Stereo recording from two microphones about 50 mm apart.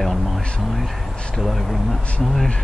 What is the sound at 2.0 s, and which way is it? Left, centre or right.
Speech, centre.